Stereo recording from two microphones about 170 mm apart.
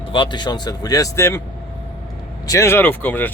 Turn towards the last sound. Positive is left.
turn(degrees=10)  # may be behind; listen again after turning